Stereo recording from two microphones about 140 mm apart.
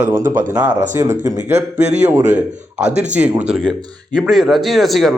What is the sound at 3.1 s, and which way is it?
A man's voice, 10° right (ahead or behind).